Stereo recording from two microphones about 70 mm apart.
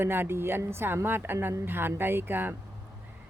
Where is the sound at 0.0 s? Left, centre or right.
Right.